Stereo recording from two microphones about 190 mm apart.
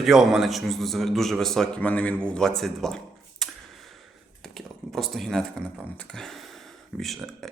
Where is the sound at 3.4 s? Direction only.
Centre (ahead or behind).